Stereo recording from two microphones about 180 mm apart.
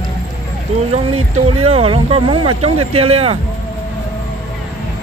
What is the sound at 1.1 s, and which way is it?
Speech, 35° right (ahead or behind).